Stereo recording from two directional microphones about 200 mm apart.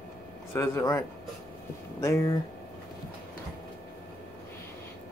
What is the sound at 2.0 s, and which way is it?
Speech, 15° left (ahead or behind).